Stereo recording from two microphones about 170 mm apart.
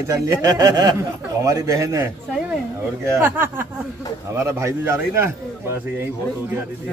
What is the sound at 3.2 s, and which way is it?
A man's voice, 15° right (ahead or behind).